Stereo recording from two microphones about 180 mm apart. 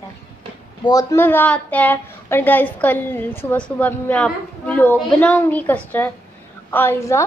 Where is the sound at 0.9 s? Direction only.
20° left (ahead or behind).